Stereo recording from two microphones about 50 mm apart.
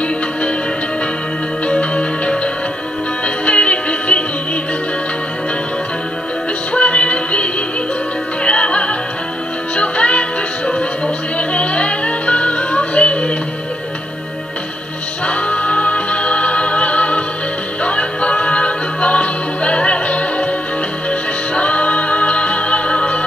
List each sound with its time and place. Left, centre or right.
1.7 s music: left
6.7 s music: left
8.5 s music: left
11.3 s music: left
15.2 s music: left